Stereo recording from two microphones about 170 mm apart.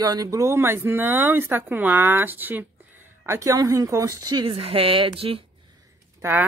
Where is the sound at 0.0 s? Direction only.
20° right (ahead or behind).